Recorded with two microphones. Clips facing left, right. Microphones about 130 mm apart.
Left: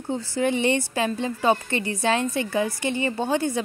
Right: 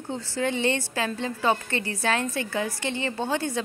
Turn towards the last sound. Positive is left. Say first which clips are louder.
# left 3 dB
turn(degrees=15)  # may be behind; listen again after turning